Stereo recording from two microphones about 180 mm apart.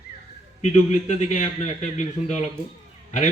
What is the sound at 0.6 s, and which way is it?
A man's voice, 40° left (ahead or behind).